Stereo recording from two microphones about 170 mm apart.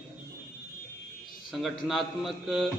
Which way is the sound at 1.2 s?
Centre (ahead or behind).